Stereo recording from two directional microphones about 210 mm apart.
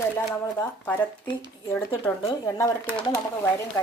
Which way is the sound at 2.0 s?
10° left (ahead or behind).